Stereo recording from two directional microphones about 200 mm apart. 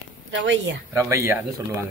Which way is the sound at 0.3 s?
70° right (ahead or behind).